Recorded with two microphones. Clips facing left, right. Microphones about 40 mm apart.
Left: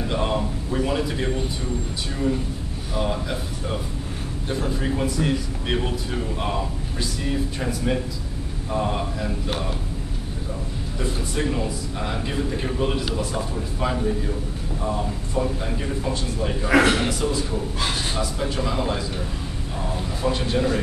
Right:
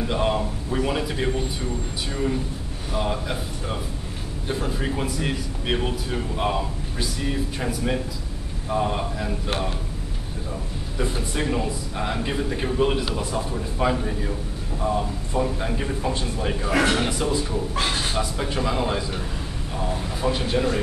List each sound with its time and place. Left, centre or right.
0.0 s a man's voice: centre
2.9 s a man's voice: centre
4.5 s a man's voice: centre
11.0 s a man's voice: centre
15.6 s a man's voice: centre
16.6 s a man's voice: left
17.0 s a man's voice: centre